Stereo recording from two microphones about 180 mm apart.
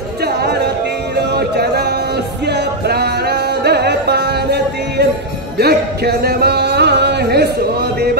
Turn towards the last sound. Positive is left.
turn(degrees=-65)  # may be behind; listen again after turning